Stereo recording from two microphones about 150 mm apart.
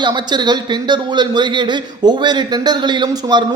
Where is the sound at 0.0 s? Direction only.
30° right (ahead or behind).